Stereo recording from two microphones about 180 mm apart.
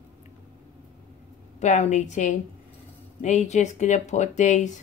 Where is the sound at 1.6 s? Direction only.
40° left (ahead or behind).